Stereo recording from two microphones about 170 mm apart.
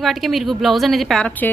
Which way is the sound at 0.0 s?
Centre (ahead or behind).